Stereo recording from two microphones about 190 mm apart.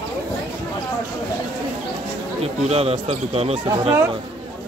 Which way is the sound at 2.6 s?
30° right (ahead or behind).